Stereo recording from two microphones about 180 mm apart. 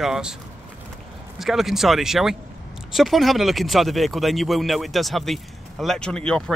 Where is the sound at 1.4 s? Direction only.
Centre (ahead or behind).